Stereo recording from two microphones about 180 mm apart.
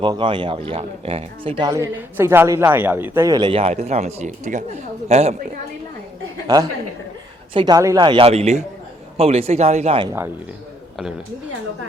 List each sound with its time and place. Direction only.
0.0 s speech: 25° right (ahead or behind)
1.7 s a man's voice: 15° right (ahead or behind); by 5.4 s 35° right (ahead or behind)
6.5 s speech: 20° right (ahead or behind)